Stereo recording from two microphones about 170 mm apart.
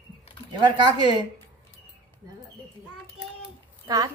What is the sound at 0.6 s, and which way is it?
Speech, 25° right (ahead or behind).